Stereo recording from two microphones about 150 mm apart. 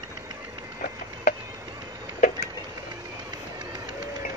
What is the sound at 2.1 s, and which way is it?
Vehicle, 60° left (ahead or behind).